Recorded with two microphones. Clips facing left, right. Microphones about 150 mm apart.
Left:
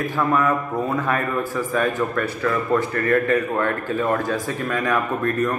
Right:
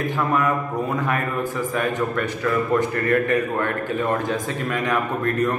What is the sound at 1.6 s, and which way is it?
A man's voice, 20° right (ahead or behind).